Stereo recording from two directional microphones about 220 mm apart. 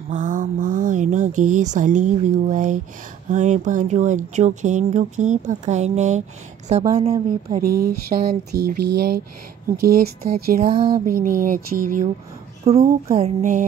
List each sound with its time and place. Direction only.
0.1 s mantra: 35° right (ahead or behind)
1.5 s speech: 35° right (ahead or behind)
7.6 s speech: 45° right (ahead or behind)